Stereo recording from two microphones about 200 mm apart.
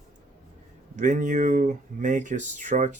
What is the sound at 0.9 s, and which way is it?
Speech, 40° right (ahead or behind).